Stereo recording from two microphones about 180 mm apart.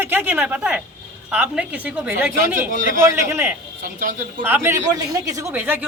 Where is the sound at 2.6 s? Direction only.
50° right (ahead or behind).